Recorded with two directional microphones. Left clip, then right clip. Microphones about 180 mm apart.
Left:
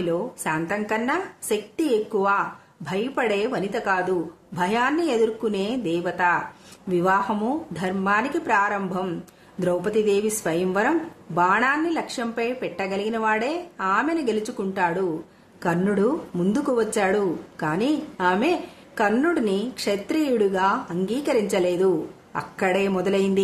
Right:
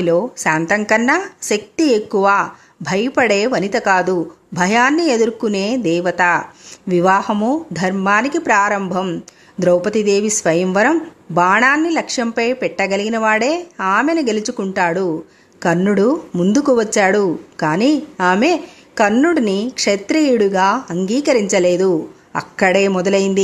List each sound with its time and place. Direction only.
0.0 s a woman's voice: 40° right (ahead or behind)